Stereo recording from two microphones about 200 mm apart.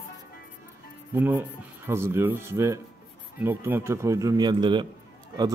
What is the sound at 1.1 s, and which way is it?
Speech, 10° right (ahead or behind).